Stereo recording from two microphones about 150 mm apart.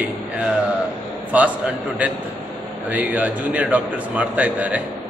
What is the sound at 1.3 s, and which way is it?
Speech, 10° right (ahead or behind).